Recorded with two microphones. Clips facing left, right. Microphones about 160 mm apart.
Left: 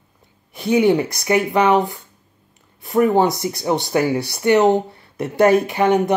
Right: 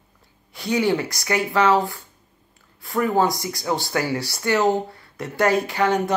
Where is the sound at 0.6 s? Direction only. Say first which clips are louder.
Left 6 dB; 20° left (ahead or behind).